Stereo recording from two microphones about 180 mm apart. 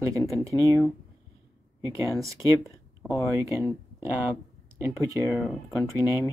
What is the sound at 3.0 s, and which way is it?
Speech, 5° left (ahead or behind).